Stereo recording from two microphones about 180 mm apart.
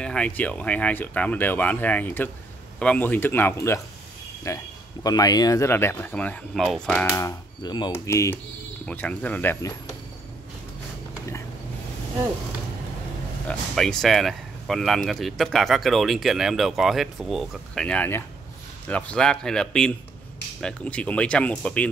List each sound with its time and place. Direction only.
0.0 s speech: 5° left (ahead or behind)
7.2 s speech: 20° left (ahead or behind)
13.5 s speech: centre (ahead or behind)